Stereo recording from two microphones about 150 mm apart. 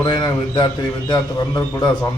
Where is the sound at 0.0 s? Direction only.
30° left (ahead or behind).